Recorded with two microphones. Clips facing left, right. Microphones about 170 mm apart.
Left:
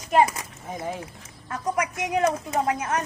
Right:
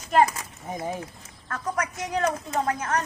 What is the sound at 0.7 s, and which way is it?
Speech, 15° right (ahead or behind).